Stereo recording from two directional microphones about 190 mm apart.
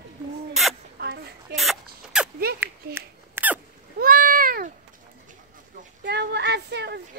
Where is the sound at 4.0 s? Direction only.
50° right (ahead or behind).